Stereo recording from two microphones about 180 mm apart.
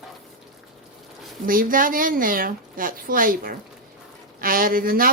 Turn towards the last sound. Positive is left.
turn(degrees=-55)  # may be behind; listen again after turning